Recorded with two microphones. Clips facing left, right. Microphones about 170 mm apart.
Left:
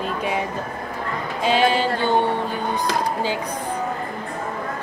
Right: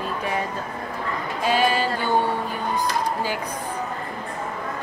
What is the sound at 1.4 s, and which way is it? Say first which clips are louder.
Music: left 2 dB; 20° left (ahead or behind).